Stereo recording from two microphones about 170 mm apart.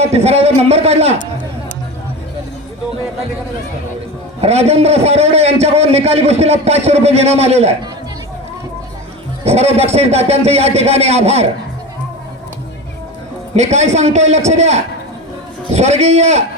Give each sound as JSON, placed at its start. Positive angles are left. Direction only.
{"t": 0.0, "sound": "a man's voice", "side_deg": -40}
{"t": 4.4, "sound": "a man's voice", "side_deg": -40}
{"t": 9.4, "sound": "a man's voice", "side_deg": -40}
{"t": 13.6, "sound": "a man's voice", "side_deg": -40}